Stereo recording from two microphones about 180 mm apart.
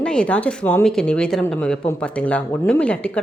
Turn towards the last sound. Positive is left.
turn(degrees=5)  # may be behind; listen again after turning